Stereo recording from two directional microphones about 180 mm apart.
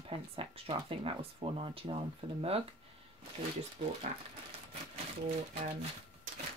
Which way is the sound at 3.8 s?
35° right (ahead or behind).